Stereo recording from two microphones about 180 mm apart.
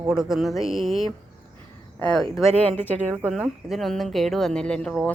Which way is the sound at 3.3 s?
Centre (ahead or behind).